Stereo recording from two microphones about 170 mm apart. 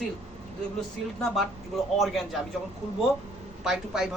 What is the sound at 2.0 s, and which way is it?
Speech, centre (ahead or behind).